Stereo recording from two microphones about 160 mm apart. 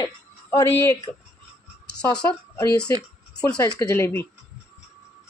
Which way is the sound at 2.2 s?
20° left (ahead or behind).